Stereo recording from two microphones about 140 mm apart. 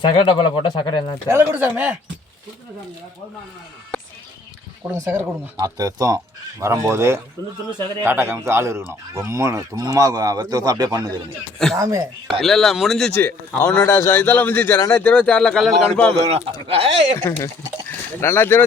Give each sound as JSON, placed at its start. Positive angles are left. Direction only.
{"t": 0.0, "sound": "speech", "side_deg": 35}
{"t": 1.3, "sound": "speech", "side_deg": -15}
{"t": 4.9, "sound": "speech", "side_deg": -20}
{"t": 12.4, "sound": "a man's voice", "side_deg": 0}
{"t": 14.8, "sound": "speech", "side_deg": 25}
{"t": 15.0, "sound": "a man's voice", "side_deg": 10}
{"t": 16.3, "sound": "speech", "side_deg": -45}
{"t": 17.3, "sound": "a man's voice", "side_deg": 15}